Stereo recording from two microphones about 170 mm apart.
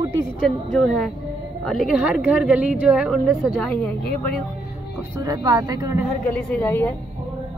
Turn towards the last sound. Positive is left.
turn(degrees=10)  # may be behind; listen again after turning